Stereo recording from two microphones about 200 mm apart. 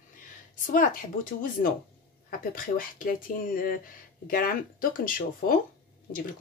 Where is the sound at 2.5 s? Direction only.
45° left (ahead or behind).